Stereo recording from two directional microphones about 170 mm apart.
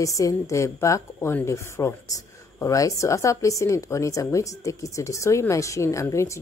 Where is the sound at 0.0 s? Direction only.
20° left (ahead or behind).